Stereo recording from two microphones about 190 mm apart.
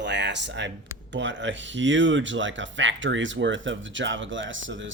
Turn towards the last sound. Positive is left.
turn(degrees=-80)